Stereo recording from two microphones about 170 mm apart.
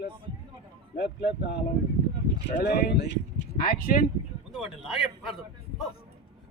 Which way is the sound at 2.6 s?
70° left (ahead or behind).